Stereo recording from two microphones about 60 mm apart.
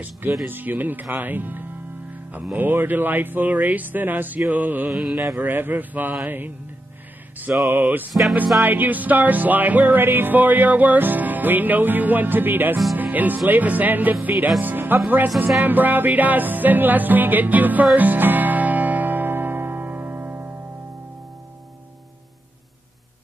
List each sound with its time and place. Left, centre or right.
0.5 s speech: right
4.5 s music: right
4.9 s mantra: centre
5.4 s speech: right
7.5 s music: right
7.8 s speech: right
8.1 s speech: centre
8.6 s music: right
14.6 s speech: right
15.6 s music: right